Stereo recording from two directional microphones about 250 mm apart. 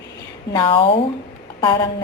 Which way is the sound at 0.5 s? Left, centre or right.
Left.